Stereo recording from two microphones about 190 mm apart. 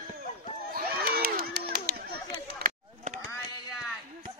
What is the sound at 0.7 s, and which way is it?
Crowd, 50° right (ahead or behind).